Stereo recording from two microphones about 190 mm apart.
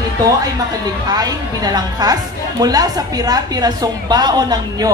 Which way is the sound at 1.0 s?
20° right (ahead or behind).